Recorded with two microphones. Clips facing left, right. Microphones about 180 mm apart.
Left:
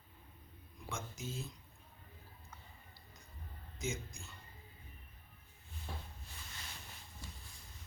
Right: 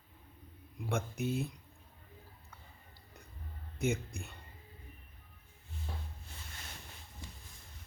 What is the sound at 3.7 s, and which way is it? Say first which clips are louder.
Speech: right 8 dB; 60° right (ahead or behind).